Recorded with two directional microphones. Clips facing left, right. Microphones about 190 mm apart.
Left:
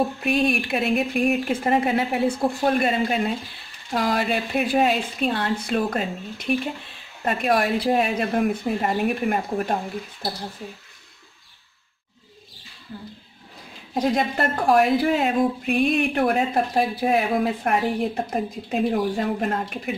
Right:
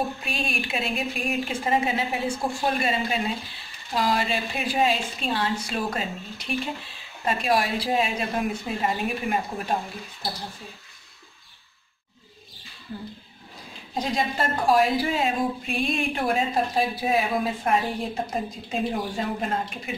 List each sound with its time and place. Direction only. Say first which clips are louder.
0.2 s speech: left 9 dB; 60° left (ahead or behind)
13.9 s speech: left 4 dB; 60° left (ahead or behind)